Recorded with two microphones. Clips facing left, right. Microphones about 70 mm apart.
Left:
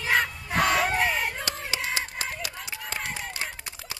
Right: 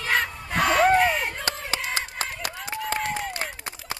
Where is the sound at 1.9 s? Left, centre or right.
Right.